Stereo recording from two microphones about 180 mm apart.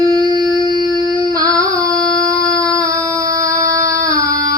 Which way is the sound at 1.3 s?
20° right (ahead or behind).